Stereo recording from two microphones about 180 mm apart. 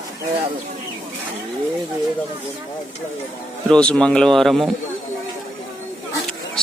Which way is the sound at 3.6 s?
5° left (ahead or behind).